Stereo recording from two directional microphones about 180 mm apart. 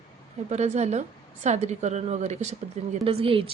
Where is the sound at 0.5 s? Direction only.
40° right (ahead or behind).